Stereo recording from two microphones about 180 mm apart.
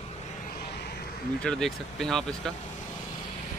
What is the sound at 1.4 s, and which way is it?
Speech, 5° left (ahead or behind).